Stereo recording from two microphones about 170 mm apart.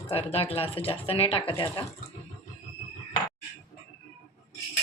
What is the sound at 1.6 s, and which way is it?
Speech, 20° left (ahead or behind).